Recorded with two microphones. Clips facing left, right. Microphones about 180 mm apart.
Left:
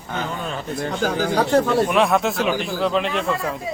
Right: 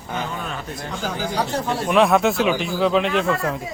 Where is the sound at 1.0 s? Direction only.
55° left (ahead or behind).